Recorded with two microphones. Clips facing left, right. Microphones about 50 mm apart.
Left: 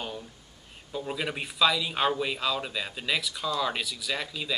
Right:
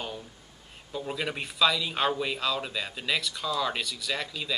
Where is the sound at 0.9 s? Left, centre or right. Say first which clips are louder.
Even; centre.